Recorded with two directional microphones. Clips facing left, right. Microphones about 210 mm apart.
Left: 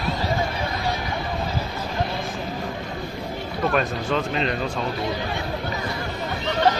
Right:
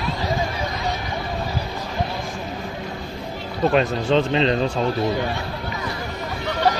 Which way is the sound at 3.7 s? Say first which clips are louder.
Right 5 dB; 25° right (ahead or behind).